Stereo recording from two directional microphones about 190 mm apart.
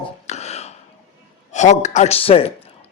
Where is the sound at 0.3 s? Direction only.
35° left (ahead or behind).